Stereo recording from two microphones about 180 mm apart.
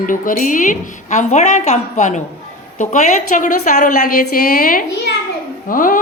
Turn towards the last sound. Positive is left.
turn(degrees=50)  # may be behind; listen again after turning